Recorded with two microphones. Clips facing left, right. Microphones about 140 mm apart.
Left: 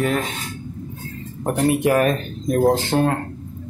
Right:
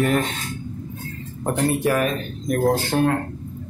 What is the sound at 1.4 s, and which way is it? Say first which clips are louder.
Speech: left 2 dB; 15° left (ahead or behind).